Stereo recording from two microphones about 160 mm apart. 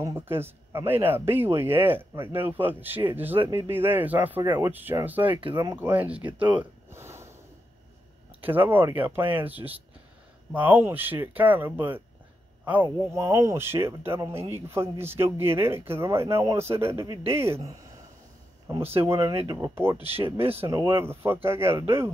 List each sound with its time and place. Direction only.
0.0 s speech: 15° right (ahead or behind)
5.2 s speech: 30° right (ahead or behind)
5.8 s speech: 10° right (ahead or behind)
6.3 s speech: 30° right (ahead or behind)
6.6 s a sound: 15° right (ahead or behind)
8.4 s speech: 10° right (ahead or behind)